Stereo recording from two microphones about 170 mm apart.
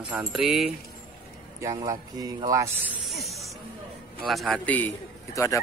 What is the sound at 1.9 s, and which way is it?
Speech, 20° right (ahead or behind).